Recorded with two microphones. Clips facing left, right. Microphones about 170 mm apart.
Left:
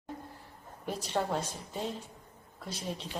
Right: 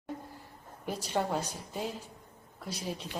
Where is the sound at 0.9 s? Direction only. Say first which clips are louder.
Even; centre (ahead or behind).